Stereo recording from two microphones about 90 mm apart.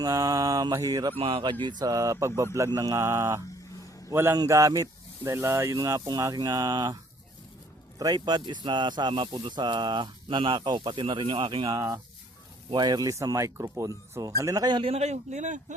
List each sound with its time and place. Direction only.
0.0 s speech: 40° right (ahead or behind)
1.2 s speech: 90° right
1.6 s a man's voice: 45° right (ahead or behind); by 4.4 s 25° right (ahead or behind)
4.4 s speech: 35° right (ahead or behind); by 11.7 s 70° right (ahead or behind)
11.7 s speech: 40° right (ahead or behind)
14.7 s speech: 70° right (ahead or behind)